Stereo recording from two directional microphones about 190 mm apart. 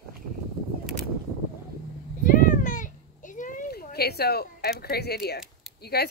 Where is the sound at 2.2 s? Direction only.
45° left (ahead or behind).